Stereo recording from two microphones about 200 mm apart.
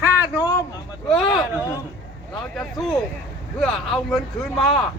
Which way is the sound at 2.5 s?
Centre (ahead or behind).